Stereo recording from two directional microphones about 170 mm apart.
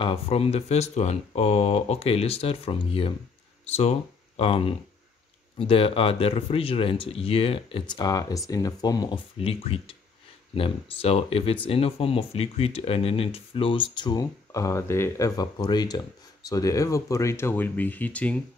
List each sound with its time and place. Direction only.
0.0 s speech: 35° left (ahead or behind)
4.4 s speech: 35° left (ahead or behind); by 18.4 s 10° left (ahead or behind)